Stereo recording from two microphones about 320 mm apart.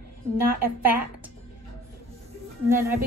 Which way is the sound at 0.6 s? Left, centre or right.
Centre.